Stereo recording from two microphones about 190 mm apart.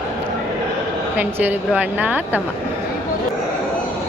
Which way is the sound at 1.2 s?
10° right (ahead or behind).